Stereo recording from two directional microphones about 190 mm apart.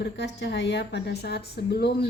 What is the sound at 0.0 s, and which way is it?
A woman's voice, 65° left (ahead or behind).